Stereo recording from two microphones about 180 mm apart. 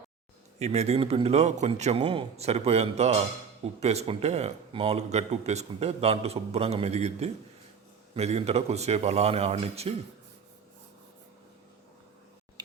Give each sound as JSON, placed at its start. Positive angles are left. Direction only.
{"t": 0.6, "sound": "speech", "side_deg": -35}
{"t": 12.6, "sound": "tick-tock", "side_deg": -25}